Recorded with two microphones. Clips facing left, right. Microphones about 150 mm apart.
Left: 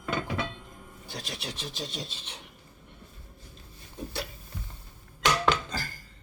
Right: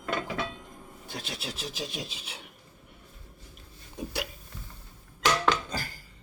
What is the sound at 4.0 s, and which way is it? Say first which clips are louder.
Hiccup: right 2 dB; 10° right (ahead or behind).